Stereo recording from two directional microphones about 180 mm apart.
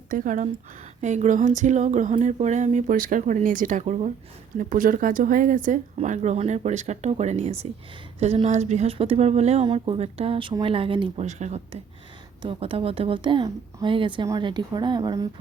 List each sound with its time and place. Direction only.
0.1 s speech: 45° right (ahead or behind); by 11.1 s 30° right (ahead or behind)
11.2 s speech: 40° right (ahead or behind); by 15.3 s 20° right (ahead or behind)